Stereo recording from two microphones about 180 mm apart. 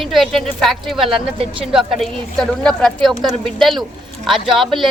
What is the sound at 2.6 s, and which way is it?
A woman's voice, centre (ahead or behind).